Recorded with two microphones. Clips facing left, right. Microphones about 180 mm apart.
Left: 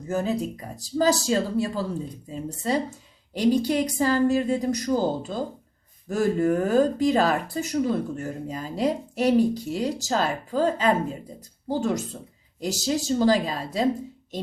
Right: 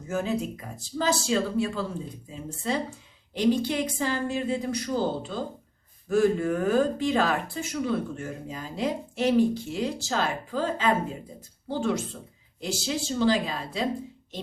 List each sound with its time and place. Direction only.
0.1 s speech: 35° left (ahead or behind)